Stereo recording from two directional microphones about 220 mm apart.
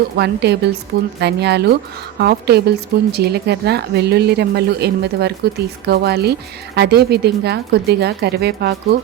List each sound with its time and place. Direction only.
0.2 s speech: 50° right (ahead or behind)